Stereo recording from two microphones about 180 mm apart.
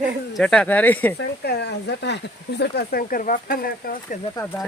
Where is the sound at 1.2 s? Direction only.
65° left (ahead or behind).